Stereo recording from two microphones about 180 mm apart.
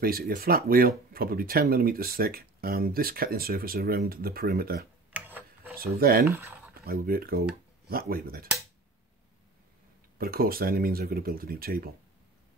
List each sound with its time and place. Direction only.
0.0 s speech: 55° right (ahead or behind)
5.1 s a sound: 10° right (ahead or behind)
5.8 s speech: 55° right (ahead or behind)
6.2 s speech: 10° right (ahead or behind)
6.7 s speech: 55° right (ahead or behind)
10.1 s speech: 55° right (ahead or behind)